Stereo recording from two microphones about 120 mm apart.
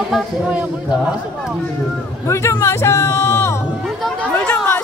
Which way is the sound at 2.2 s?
25° left (ahead or behind).